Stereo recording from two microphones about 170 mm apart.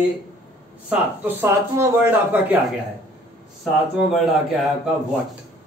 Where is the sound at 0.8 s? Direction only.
10° right (ahead or behind).